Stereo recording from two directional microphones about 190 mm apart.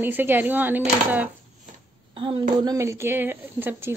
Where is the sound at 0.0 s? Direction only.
10° right (ahead or behind).